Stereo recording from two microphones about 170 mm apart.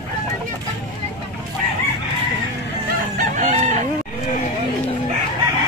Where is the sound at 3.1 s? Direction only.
50° right (ahead or behind).